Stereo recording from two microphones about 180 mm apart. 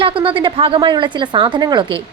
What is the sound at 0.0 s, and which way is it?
Speech, 30° right (ahead or behind).